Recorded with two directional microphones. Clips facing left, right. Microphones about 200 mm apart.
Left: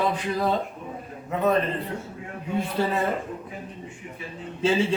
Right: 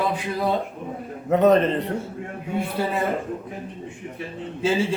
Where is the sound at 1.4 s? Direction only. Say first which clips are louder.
Right 5 dB; 90° right.